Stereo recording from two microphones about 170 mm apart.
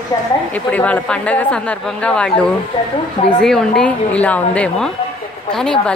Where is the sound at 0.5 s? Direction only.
10° left (ahead or behind).